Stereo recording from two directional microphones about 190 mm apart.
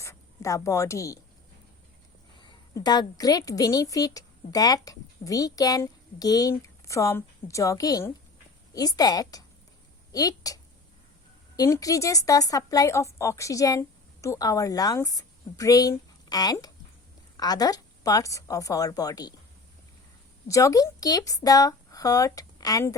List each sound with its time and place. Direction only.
0.0 s speech: 15° left (ahead or behind)
2.4 s a woman's voice: 25° left (ahead or behind)
20.5 s speech: 15° left (ahead or behind)